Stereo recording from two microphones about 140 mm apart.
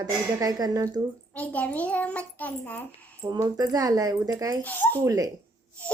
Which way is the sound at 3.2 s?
25° right (ahead or behind).